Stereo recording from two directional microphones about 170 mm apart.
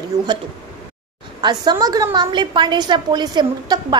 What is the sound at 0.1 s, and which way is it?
Speech, 20° right (ahead or behind).